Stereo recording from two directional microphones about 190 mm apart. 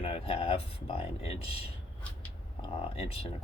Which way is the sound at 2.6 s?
30° left (ahead or behind).